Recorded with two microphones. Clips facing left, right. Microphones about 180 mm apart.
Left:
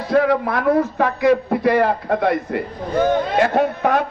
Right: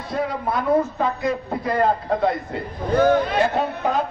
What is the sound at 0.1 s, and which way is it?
A man's voice, 75° left (ahead or behind).